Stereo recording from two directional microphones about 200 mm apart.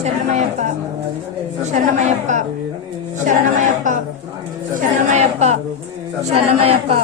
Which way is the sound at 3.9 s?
40° right (ahead or behind).